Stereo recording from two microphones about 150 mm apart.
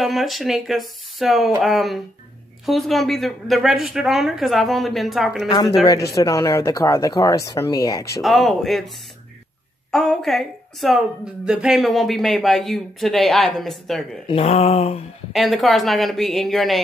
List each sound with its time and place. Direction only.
0.0 s speech: centre (ahead or behind)
5.5 s speech: 30° left (ahead or behind)
8.2 s speech: centre (ahead or behind)
14.2 s a sound: 40° left (ahead or behind)
15.3 s speech: centre (ahead or behind)